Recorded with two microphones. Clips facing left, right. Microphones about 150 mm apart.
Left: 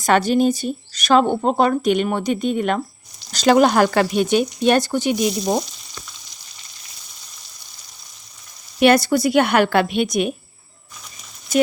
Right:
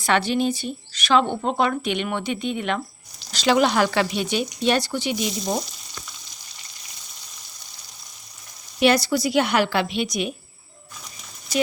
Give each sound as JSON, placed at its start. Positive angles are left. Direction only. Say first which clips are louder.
{"t": 0.0, "sound": "speech", "louder": "left 5 dB", "side_deg": 45}
{"t": 8.8, "sound": "speech", "louder": "left 4 dB", "side_deg": 55}